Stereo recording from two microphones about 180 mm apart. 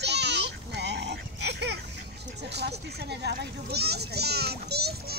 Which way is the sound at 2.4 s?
70° right (ahead or behind).